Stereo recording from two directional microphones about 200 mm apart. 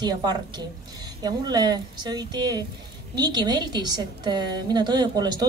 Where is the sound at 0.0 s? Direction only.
20° right (ahead or behind).